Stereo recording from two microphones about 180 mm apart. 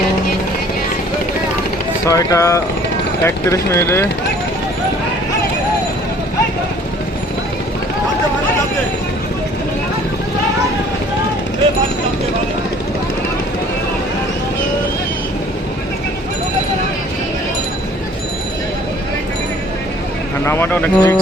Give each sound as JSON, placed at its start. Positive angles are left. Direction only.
{"t": 2.0, "sound": "speech", "side_deg": 15}
{"t": 20.4, "sound": "speech", "side_deg": 10}